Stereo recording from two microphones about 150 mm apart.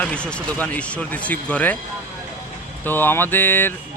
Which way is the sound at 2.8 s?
15° left (ahead or behind).